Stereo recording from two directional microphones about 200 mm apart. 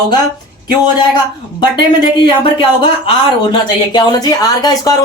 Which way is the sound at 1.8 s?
50° right (ahead or behind).